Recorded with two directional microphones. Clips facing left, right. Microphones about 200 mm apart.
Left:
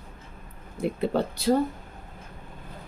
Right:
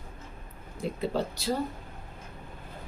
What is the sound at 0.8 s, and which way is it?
Speech, 55° left (ahead or behind).